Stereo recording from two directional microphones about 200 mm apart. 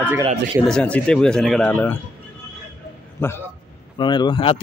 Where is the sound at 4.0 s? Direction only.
20° left (ahead or behind).